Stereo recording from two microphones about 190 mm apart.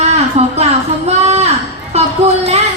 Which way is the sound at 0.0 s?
35° right (ahead or behind).